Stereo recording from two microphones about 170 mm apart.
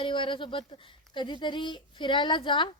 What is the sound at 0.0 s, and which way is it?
A woman's voice, 30° left (ahead or behind).